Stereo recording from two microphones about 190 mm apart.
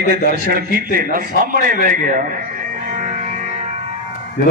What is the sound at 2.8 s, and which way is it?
Music, 40° right (ahead or behind).